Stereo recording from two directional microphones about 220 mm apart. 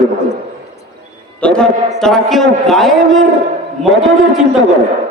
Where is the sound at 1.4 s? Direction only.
5° left (ahead or behind).